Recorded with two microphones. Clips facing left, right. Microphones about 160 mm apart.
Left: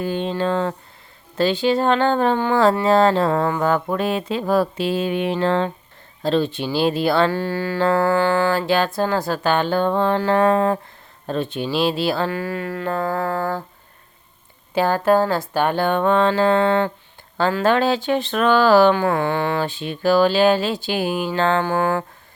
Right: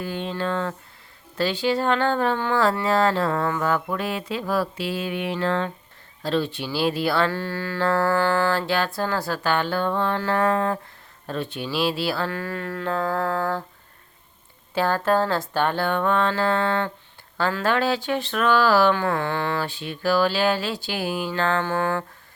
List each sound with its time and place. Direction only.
0.0 s speech: 25° left (ahead or behind)
3.9 s speech: 25° left (ahead or behind); by 13.7 s 10° left (ahead or behind)
14.8 s speech: 15° left (ahead or behind)